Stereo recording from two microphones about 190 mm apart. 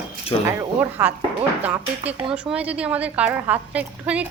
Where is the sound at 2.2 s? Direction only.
30° right (ahead or behind).